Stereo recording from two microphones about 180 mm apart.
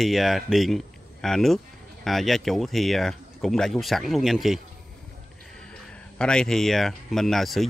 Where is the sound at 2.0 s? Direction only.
Centre (ahead or behind).